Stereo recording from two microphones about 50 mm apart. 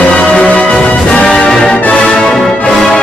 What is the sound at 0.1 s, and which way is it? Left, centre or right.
Music, centre.